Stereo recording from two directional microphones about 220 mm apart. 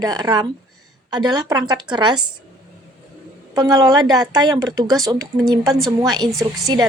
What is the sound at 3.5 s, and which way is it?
A woman's voice, 15° right (ahead or behind).